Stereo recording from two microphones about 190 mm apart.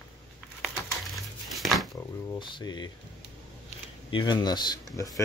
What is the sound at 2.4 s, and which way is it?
Speech, 25° left (ahead or behind).